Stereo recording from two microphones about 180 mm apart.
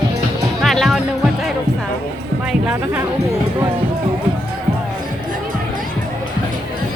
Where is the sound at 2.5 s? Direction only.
5° right (ahead or behind).